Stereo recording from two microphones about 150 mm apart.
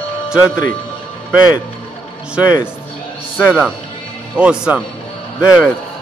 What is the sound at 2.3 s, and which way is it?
A man's voice, 5° right (ahead or behind).